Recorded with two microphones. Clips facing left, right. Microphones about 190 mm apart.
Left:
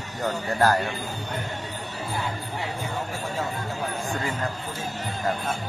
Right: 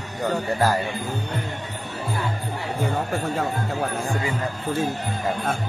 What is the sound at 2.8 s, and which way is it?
Chatter, 60° right (ahead or behind).